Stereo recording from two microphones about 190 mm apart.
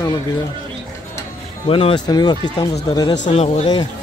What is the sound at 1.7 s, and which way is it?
Speech, 30° left (ahead or behind).